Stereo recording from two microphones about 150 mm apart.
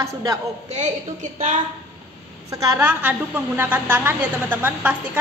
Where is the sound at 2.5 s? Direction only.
25° right (ahead or behind).